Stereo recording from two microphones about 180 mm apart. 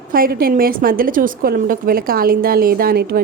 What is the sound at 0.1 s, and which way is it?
A woman's voice, 55° right (ahead or behind).